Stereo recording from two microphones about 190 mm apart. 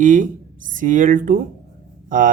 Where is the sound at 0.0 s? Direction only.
45° right (ahead or behind).